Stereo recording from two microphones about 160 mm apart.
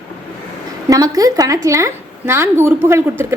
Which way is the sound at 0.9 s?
20° right (ahead or behind).